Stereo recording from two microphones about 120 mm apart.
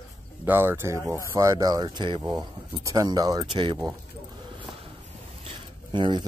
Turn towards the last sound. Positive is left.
turn(degrees=-40)  # may be behind; listen again after turning